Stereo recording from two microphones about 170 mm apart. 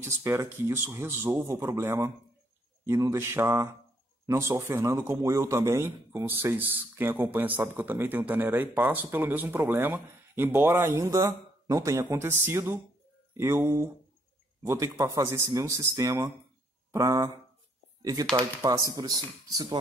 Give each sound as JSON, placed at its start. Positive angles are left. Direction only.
{"t": 0.0, "sound": "a man's voice", "side_deg": -15}
{"t": 18.3, "sound": "speech", "side_deg": -20}